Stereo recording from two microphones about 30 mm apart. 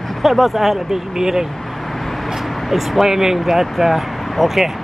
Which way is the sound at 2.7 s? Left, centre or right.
Centre.